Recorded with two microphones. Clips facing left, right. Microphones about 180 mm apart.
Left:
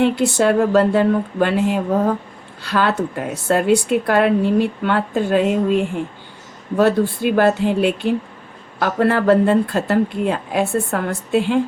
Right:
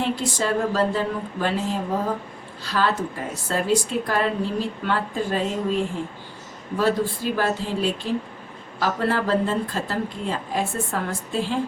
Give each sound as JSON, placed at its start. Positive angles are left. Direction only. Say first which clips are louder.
{"t": 0.0, "sound": "a woman's voice", "louder": "left 9 dB", "side_deg": 65}